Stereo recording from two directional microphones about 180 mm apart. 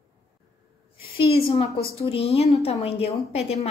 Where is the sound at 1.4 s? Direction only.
30° left (ahead or behind).